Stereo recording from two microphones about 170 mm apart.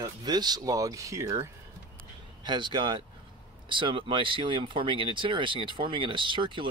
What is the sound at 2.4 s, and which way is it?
Speech, 25° right (ahead or behind).